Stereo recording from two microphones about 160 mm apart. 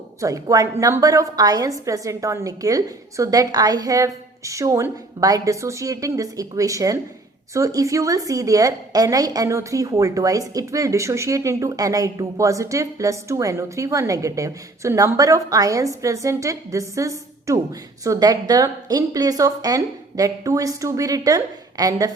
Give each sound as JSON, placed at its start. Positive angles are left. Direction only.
{"t": 0.2, "sound": "a woman's voice", "side_deg": -20}